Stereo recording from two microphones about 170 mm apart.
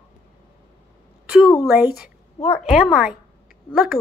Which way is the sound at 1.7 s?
5° right (ahead or behind).